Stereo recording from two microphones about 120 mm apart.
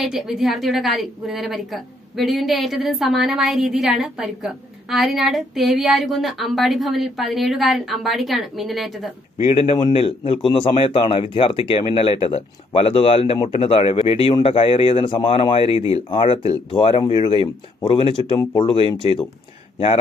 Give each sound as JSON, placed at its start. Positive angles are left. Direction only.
{"t": 0.0, "sound": "a woman's voice", "side_deg": -5}
{"t": 9.4, "sound": "speech", "side_deg": 65}
{"t": 9.8, "sound": "speech", "side_deg": 50}
{"t": 17.0, "sound": "speech", "side_deg": 40}